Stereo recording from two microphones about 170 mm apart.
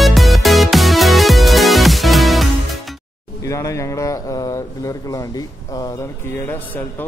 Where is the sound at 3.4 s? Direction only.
20° left (ahead or behind).